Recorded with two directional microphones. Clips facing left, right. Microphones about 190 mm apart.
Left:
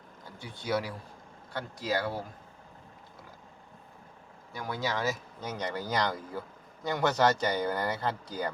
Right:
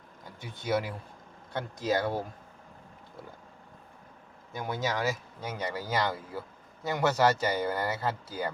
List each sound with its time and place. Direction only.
0.3 s speech: 20° right (ahead or behind)
4.5 s speech: 20° right (ahead or behind)